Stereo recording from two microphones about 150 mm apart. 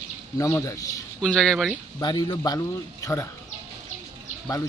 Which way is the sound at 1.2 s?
5° left (ahead or behind).